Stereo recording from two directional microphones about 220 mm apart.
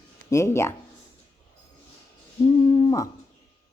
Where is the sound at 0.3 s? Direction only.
15° left (ahead or behind).